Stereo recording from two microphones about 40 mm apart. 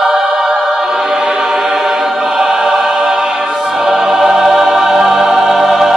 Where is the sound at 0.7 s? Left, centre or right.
Centre.